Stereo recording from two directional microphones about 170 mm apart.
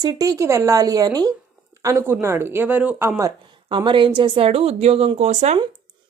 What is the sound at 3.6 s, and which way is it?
Speech, 30° right (ahead or behind).